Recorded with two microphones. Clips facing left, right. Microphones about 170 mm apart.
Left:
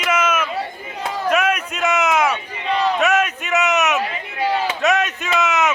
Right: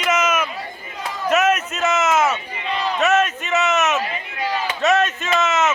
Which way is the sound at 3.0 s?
Centre (ahead or behind).